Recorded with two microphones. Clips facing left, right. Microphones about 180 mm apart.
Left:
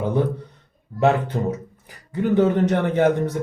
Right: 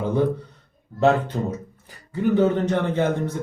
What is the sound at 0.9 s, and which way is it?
Speech, 15° left (ahead or behind).